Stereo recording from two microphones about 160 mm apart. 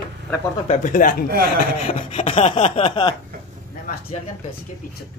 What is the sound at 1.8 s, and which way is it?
Speech, 45° left (ahead or behind).